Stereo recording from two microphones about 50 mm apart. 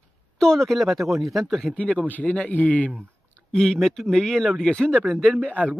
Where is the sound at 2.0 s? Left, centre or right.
Left.